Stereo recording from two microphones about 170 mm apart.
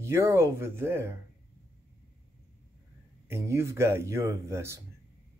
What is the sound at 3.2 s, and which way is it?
A man's voice, 15° right (ahead or behind).